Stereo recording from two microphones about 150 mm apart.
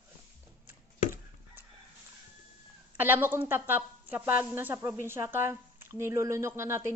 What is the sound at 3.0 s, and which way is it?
A woman's voice, 15° right (ahead or behind).